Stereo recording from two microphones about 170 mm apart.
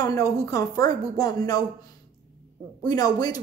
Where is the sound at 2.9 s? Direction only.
20° left (ahead or behind).